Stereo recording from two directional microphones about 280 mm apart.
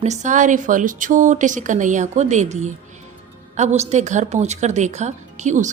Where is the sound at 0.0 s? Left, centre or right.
Right.